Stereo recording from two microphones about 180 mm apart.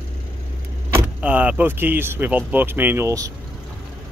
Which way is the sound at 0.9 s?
10° right (ahead or behind).